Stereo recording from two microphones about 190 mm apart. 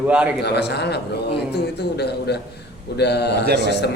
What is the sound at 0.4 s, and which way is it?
A man's voice, 60° left (ahead or behind).